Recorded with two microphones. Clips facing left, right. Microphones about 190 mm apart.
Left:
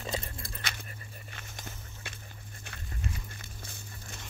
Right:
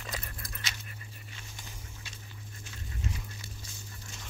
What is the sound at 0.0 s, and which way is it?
Dog, 25° left (ahead or behind).